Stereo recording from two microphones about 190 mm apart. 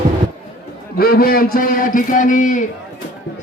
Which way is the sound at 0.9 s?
55° left (ahead or behind).